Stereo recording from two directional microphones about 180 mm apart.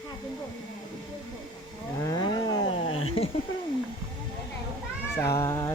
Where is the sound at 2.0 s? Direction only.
20° left (ahead or behind).